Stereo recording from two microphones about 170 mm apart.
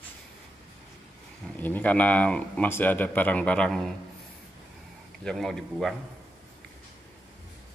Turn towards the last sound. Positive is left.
turn(degrees=0)  # may be behind; listen again after turning